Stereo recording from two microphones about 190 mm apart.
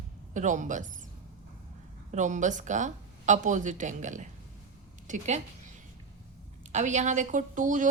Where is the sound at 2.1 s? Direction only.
40° right (ahead or behind).